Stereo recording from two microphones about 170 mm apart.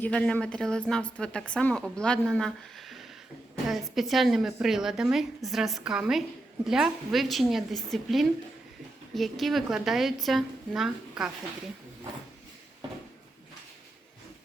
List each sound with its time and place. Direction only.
0.0 s a woman's voice: 5° left (ahead or behind)